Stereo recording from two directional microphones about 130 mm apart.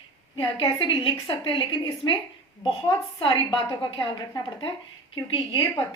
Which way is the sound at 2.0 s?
25° left (ahead or behind).